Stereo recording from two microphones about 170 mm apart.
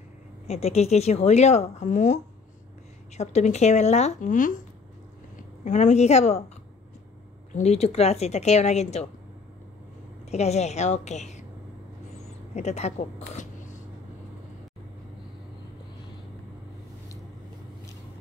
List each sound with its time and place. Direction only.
0.5 s speech: 40° left (ahead or behind)
3.2 s speech: 40° left (ahead or behind)
5.7 s speech: 45° left (ahead or behind)
7.5 s speech: 40° left (ahead or behind)
10.3 s speech: 40° left (ahead or behind)
12.5 s speech: 40° left (ahead or behind)